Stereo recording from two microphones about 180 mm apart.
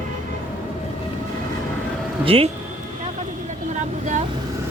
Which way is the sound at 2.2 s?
30° right (ahead or behind).